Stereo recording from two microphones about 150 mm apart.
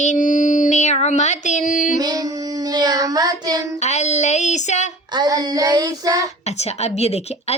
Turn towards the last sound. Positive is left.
turn(degrees=45)  # may be behind; listen again after turning